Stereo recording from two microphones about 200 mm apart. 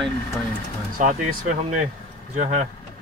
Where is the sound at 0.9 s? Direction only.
40° right (ahead or behind).